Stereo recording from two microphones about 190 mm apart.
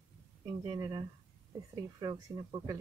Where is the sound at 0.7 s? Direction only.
20° right (ahead or behind).